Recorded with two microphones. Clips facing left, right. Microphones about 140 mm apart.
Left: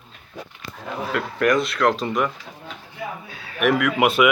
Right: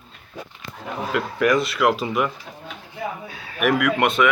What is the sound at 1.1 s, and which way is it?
Speech, centre (ahead or behind).